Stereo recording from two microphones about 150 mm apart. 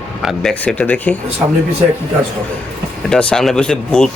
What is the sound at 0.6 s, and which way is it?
Speech, 10° left (ahead or behind).